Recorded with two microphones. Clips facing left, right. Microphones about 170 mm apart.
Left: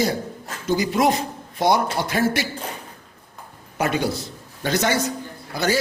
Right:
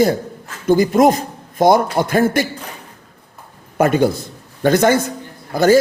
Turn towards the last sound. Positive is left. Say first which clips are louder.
# right 10 dB
turn(degrees=-50)  # may be behind; listen again after turning